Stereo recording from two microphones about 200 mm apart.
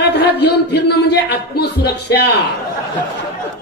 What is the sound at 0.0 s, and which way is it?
Speech, 55° left (ahead or behind).